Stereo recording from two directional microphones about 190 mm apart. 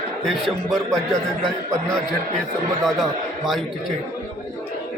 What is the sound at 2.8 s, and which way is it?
Speech, centre (ahead or behind).